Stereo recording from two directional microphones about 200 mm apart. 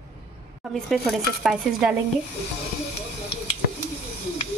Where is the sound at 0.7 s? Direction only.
Centre (ahead or behind).